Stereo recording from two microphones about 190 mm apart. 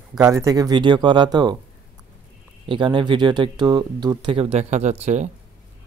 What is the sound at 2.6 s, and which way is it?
Speech, 25° right (ahead or behind).